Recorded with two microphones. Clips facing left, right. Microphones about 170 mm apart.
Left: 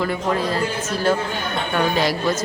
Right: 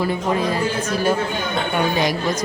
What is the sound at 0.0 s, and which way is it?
A woman's voice, 15° right (ahead or behind).